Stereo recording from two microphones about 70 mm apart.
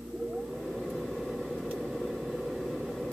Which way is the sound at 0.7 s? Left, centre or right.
Centre.